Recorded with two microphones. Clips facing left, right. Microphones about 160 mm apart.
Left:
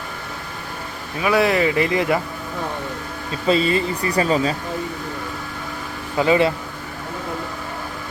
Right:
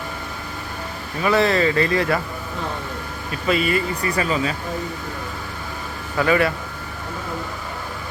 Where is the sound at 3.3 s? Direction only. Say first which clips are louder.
Left 2 dB; 30° left (ahead or behind).